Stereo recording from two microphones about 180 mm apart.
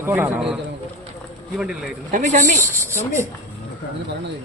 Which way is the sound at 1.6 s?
5° right (ahead or behind).